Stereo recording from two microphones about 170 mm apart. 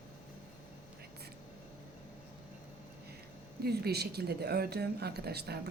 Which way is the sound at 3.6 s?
70° right (ahead or behind).